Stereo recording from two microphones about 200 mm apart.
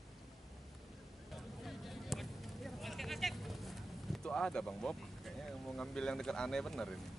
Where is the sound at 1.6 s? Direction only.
Centre (ahead or behind).